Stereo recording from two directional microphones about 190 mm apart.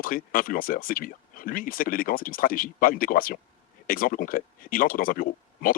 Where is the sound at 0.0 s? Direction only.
45° left (ahead or behind).